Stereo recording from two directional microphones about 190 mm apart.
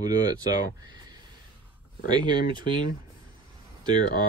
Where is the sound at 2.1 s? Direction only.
25° right (ahead or behind).